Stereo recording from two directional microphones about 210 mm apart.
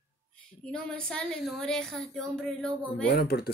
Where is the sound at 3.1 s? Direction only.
45° left (ahead or behind).